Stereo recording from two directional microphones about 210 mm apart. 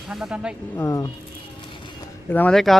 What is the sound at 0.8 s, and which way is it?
Speech, 15° left (ahead or behind).